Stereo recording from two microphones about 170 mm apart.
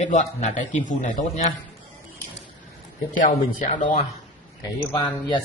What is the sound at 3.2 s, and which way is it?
Speech, 45° left (ahead or behind).